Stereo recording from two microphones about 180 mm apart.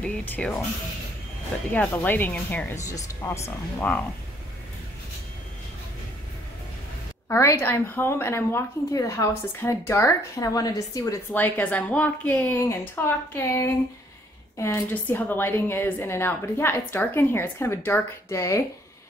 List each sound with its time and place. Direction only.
0.0 s speech: 10° left (ahead or behind)
1.7 s a woman's voice: 10° left (ahead or behind)
7.2 s a woman's voice: 15° left (ahead or behind)